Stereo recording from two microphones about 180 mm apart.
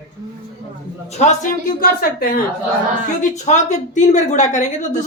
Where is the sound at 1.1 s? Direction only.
40° left (ahead or behind).